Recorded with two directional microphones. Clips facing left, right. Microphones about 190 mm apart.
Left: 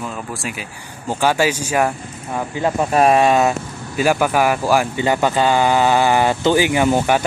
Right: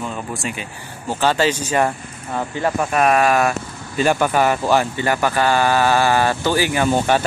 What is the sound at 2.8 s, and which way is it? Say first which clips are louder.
Speech: left 3 dB; 30° left (ahead or behind).